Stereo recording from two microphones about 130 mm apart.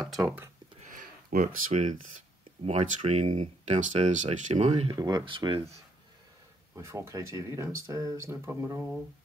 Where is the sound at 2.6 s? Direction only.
50° right (ahead or behind).